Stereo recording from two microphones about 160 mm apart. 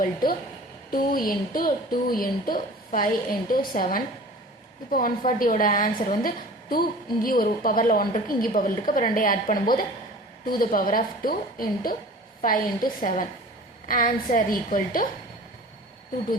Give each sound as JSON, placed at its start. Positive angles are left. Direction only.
{"t": 0.0, "sound": "a woman's voice", "side_deg": 65}